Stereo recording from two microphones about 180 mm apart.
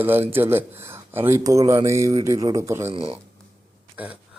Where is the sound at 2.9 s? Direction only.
35° right (ahead or behind).